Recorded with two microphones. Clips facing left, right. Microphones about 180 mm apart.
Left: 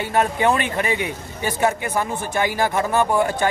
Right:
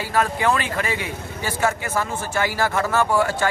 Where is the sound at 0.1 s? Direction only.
20° left (ahead or behind).